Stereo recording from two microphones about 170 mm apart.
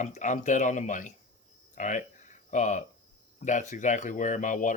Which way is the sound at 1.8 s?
50° left (ahead or behind).